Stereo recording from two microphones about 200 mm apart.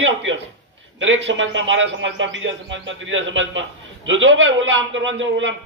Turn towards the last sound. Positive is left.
turn(degrees=-70)  # may be behind; listen again after turning